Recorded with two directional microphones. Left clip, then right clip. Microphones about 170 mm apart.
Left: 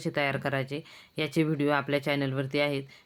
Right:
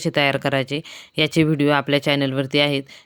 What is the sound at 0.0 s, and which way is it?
Speech, 45° right (ahead or behind).